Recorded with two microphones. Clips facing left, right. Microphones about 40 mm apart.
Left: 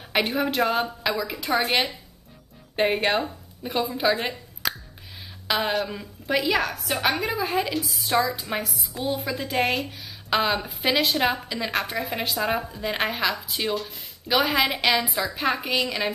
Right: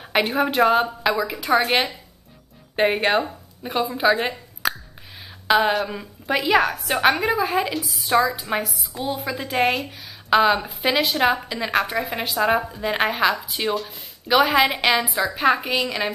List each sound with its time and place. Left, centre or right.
0.0 s a woman's voice: centre